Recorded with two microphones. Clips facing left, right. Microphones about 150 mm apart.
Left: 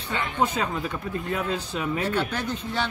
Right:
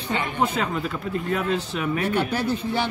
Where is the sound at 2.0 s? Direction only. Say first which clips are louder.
Right 3 dB; 10° right (ahead or behind).